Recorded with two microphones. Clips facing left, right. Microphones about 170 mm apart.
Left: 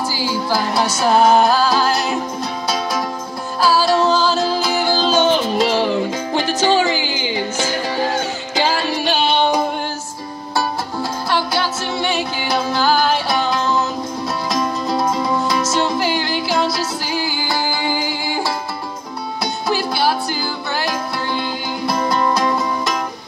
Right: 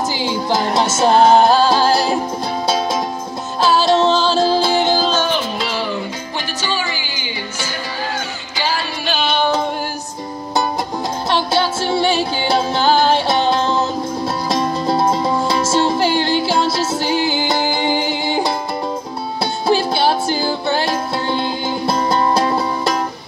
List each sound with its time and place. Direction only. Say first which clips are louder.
0.1 s music: right 1 dB; 20° right (ahead or behind)
3.6 s music: right 1 dB; 25° right (ahead or behind)
11.2 s music: right 3 dB; 25° right (ahead or behind)